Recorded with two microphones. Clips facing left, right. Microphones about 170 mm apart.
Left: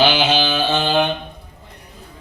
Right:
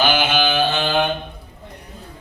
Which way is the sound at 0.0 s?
50° right (ahead or behind).